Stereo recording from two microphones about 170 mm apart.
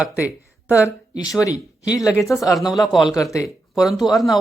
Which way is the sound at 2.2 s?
Centre (ahead or behind).